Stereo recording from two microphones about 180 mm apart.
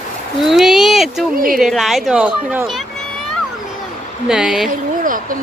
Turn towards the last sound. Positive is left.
turn(degrees=-50)  # may be behind; listen again after turning